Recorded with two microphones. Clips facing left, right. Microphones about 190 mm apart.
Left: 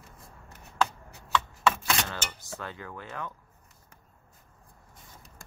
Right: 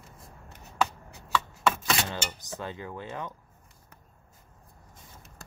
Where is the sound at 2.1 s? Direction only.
20° right (ahead or behind).